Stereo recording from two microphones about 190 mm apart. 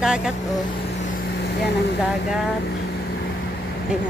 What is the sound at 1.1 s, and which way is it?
Vehicle, 60° left (ahead or behind).